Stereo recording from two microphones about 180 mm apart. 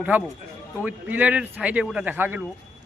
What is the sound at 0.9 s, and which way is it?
Speech, 10° right (ahead or behind).